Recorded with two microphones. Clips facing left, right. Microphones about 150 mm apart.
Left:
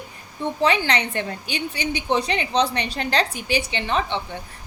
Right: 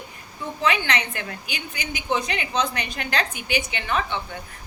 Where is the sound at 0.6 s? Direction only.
35° left (ahead or behind).